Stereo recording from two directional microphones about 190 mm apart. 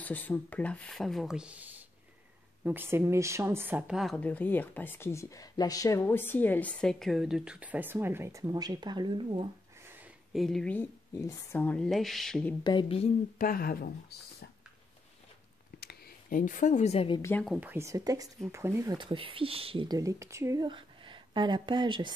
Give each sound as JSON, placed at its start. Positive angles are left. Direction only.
{"t": 0.0, "sound": "speech", "side_deg": 10}
{"t": 10.3, "sound": "speech", "side_deg": 0}
{"t": 12.6, "sound": "speech", "side_deg": 25}
{"t": 13.4, "sound": "speech", "side_deg": 50}
{"t": 15.8, "sound": "speech", "side_deg": 50}
{"t": 17.2, "sound": "speech", "side_deg": 10}
{"t": 17.5, "sound": "speech", "side_deg": -10}